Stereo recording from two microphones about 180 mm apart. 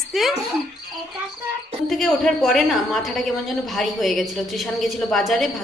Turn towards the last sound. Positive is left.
turn(degrees=0)  # may be behind; listen again after turning